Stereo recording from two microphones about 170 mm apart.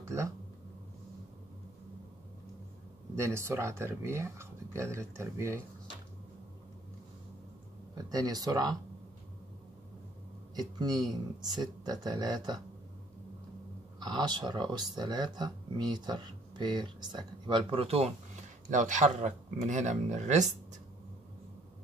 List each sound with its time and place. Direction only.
0.0 s speech: 15° right (ahead or behind)
3.2 s speech: 15° right (ahead or behind)
7.9 s speech: 20° right (ahead or behind)
10.5 s speech: 25° right (ahead or behind)
13.9 s speech: 25° right (ahead or behind); by 20.5 s 45° right (ahead or behind)